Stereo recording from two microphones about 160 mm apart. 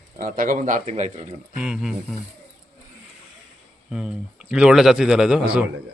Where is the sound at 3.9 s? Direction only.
5° right (ahead or behind).